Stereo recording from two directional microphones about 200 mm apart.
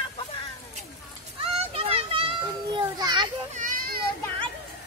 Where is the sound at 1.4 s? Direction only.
30° right (ahead or behind).